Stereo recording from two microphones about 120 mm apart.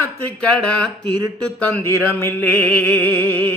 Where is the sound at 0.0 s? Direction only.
10° left (ahead or behind).